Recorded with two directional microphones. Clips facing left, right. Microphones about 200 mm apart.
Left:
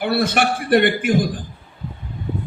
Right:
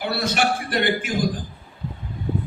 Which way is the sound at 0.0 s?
55° left (ahead or behind).